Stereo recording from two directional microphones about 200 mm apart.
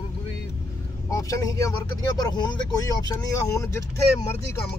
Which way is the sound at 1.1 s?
15° left (ahead or behind).